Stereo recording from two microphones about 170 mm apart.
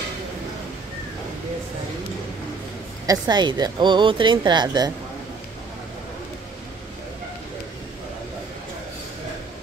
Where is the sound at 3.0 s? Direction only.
25° right (ahead or behind).